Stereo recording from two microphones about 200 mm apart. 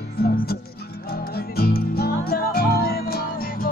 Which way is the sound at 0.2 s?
50° left (ahead or behind).